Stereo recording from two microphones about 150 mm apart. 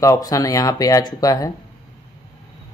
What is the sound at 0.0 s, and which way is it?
Speech, 20° left (ahead or behind).